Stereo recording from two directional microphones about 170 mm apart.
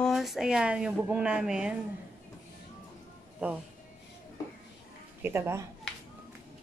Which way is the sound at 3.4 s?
10° right (ahead or behind).